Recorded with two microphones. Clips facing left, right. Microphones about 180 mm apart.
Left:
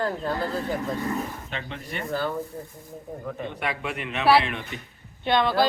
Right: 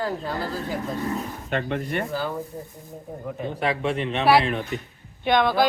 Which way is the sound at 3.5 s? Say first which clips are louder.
Right 9 dB; 30° right (ahead or behind).